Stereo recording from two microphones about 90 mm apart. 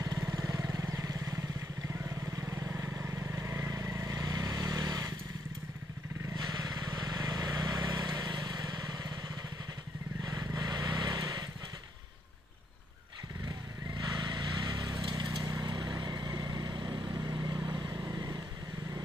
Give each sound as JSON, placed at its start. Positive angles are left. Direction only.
{"t": 0.2, "sound": "vehicle", "side_deg": -40}
{"t": 6.3, "sound": "vehicle", "side_deg": -45}
{"t": 10.2, "sound": "vehicle", "side_deg": -45}
{"t": 14.1, "sound": "vehicle", "side_deg": -50}